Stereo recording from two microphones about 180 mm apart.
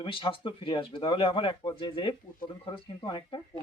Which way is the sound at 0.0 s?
30° left (ahead or behind).